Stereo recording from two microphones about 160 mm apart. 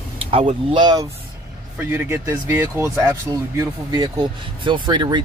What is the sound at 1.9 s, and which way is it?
Speech, 15° right (ahead or behind).